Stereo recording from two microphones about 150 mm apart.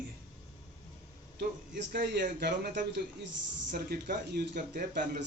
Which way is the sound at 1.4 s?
90° right.